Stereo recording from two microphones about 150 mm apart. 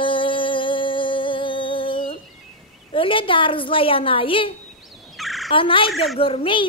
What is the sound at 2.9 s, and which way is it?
A woman's voice, 35° left (ahead or behind).